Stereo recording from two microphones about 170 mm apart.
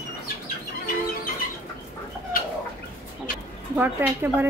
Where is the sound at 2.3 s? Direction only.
60° left (ahead or behind).